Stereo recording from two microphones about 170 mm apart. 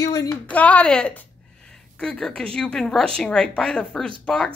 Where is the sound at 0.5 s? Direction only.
10° left (ahead or behind).